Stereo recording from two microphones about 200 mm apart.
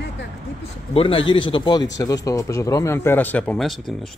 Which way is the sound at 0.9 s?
25° left (ahead or behind).